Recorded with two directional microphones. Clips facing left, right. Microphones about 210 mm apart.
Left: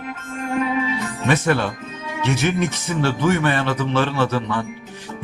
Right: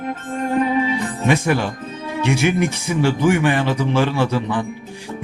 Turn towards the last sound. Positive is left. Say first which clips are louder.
# right 1 dB
turn(degrees=-15)  # may be behind; listen again after turning